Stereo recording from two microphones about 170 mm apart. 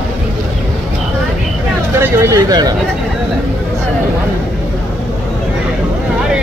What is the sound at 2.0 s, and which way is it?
Speech, 15° right (ahead or behind).